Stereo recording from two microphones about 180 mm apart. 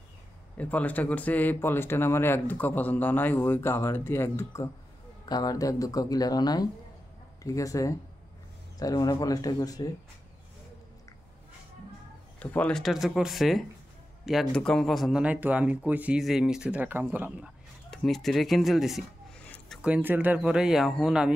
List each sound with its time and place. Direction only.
0.6 s speech: 10° left (ahead or behind)
12.4 s speech: 5° left (ahead or behind)
19.4 s a sound: 10° left (ahead or behind)
19.8 s speech: 10° right (ahead or behind)